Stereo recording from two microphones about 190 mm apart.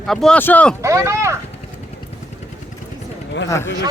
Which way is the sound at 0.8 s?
15° right (ahead or behind).